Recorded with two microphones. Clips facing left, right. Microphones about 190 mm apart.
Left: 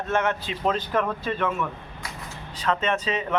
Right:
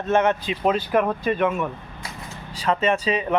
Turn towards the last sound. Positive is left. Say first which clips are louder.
# right 4 dB
turn(degrees=-10)  # may be behind; listen again after turning